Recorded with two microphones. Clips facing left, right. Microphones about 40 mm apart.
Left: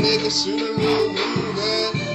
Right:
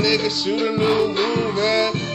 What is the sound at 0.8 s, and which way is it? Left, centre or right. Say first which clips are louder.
Music: even; right.